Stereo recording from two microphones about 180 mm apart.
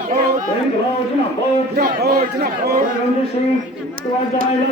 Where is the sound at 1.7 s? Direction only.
60° right (ahead or behind).